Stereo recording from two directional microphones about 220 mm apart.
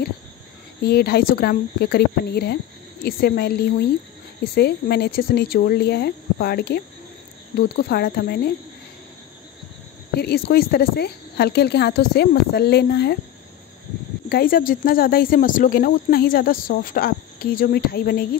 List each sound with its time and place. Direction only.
0.8 s speech: 45° left (ahead or behind)
10.1 s speech: 45° left (ahead or behind)
14.3 s speech: 40° left (ahead or behind)